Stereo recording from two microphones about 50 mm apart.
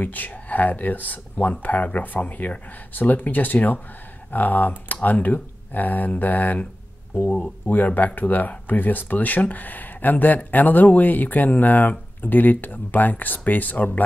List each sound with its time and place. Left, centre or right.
0.0 s speech: left